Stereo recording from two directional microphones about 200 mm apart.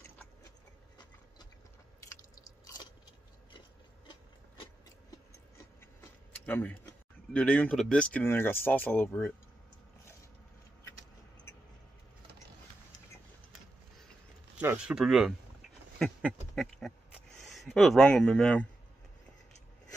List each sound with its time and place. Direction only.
2.1 s biting: 20° left (ahead or behind)
5.9 s a sound: 10° left (ahead or behind)
7.3 s speech: 5° left (ahead or behind)
14.6 s speech: 5° right (ahead or behind)
16.0 s a sound: centre (ahead or behind)
17.5 s speech: centre (ahead or behind)